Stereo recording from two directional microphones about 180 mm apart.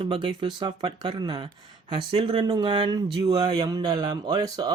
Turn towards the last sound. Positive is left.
turn(degrees=-20)  # may be behind; listen again after turning